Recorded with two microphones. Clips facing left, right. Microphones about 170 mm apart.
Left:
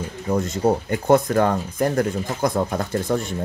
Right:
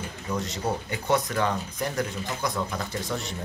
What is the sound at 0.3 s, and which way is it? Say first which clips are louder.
Speech: left 9 dB; 50° left (ahead or behind).